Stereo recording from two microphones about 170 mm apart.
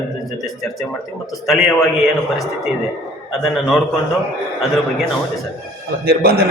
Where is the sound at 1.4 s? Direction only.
Centre (ahead or behind).